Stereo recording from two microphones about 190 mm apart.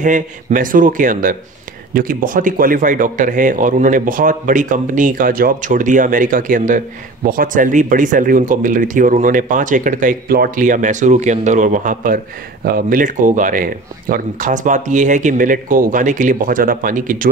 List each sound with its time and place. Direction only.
0.0 s speech: 45° right (ahead or behind)